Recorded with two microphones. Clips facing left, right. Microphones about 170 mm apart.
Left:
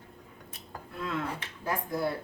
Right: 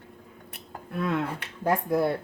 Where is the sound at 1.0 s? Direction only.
65° right (ahead or behind).